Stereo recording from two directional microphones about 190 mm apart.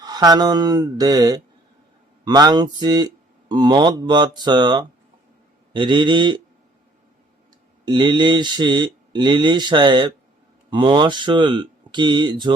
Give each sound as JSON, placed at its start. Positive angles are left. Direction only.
{"t": 0.0, "sound": "speech", "side_deg": -20}
{"t": 7.9, "sound": "speech", "side_deg": -25}